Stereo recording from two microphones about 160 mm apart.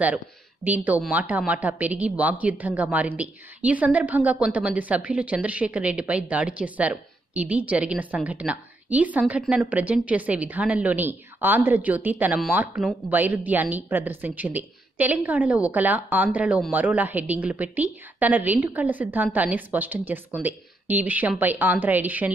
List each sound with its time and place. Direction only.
0.7 s speech: 10° right (ahead or behind)